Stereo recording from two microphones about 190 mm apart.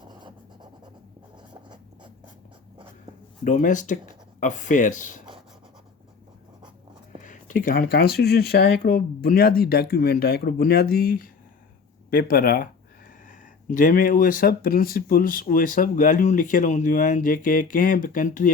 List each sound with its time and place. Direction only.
0.0 s a sound: 25° right (ahead or behind)
3.4 s speech: 40° left (ahead or behind)
7.2 s speech: 45° left (ahead or behind)